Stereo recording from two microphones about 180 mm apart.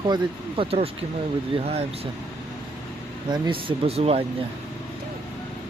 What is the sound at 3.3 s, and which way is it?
Speech, 25° right (ahead or behind).